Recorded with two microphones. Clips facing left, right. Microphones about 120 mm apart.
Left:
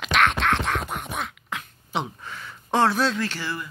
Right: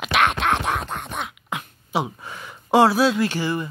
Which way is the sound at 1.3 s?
15° right (ahead or behind).